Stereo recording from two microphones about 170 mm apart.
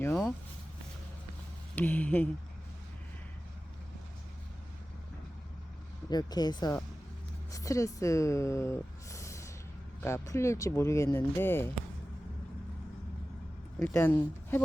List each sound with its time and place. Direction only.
1.7 s speech: 10° left (ahead or behind)
6.1 s speech: 25° left (ahead or behind)
13.7 s speech: 5° left (ahead or behind)